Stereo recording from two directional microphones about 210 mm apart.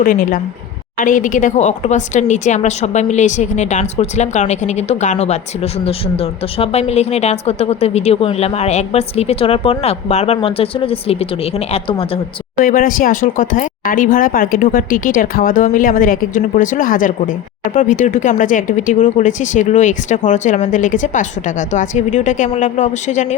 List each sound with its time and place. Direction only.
0.0 s a woman's voice: 40° left (ahead or behind)
12.5 s speech: 40° left (ahead or behind)